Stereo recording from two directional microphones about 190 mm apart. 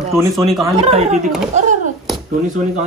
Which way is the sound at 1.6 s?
40° right (ahead or behind).